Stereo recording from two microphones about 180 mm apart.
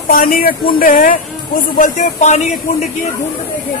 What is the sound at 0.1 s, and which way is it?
Speech, 55° left (ahead or behind).